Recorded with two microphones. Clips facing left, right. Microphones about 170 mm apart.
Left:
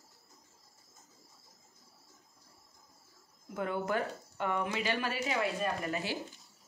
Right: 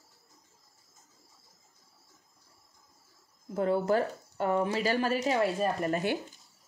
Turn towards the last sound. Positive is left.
turn(degrees=-45)  # may be behind; listen again after turning